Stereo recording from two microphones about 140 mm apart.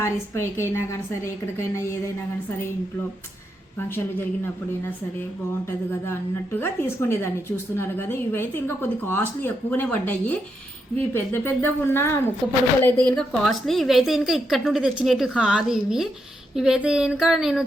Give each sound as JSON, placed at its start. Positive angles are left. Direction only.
{"t": 0.0, "sound": "a woman's voice", "side_deg": 20}
{"t": 3.8, "sound": "a woman's voice", "side_deg": 15}
{"t": 6.1, "sound": "a woman's voice", "side_deg": 15}